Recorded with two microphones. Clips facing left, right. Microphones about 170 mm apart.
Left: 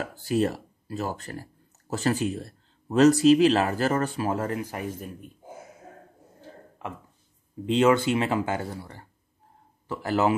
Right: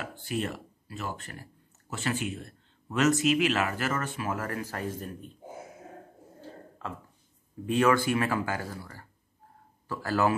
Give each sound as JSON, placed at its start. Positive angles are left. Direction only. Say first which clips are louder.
{"t": 0.0, "sound": "speech", "louder": "left 8 dB", "side_deg": 40}
{"t": 6.8, "sound": "speech", "louder": "left 3 dB", "side_deg": 15}